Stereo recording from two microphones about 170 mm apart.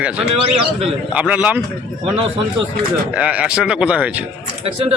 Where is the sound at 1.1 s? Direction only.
5° right (ahead or behind).